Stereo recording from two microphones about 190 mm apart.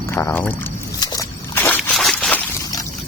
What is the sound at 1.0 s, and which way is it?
Slosh, 20° left (ahead or behind).